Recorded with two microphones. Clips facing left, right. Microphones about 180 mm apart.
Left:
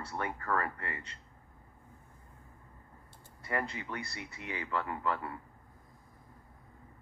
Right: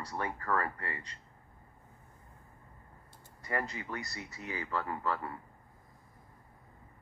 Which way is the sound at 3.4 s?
30° right (ahead or behind).